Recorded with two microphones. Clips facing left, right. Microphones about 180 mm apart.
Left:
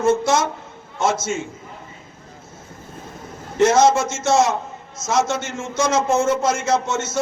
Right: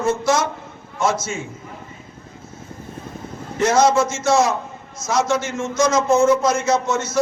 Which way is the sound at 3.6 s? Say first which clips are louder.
Left 1 dB; 25° left (ahead or behind).